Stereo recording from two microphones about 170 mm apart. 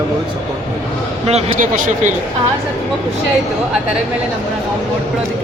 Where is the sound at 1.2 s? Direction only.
45° right (ahead or behind).